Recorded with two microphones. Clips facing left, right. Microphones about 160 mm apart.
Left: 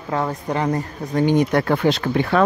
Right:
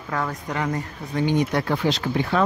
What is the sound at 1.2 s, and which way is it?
Speech, 50° left (ahead or behind).